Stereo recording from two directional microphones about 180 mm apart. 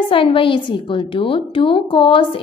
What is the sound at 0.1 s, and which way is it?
A woman's voice, 30° left (ahead or behind).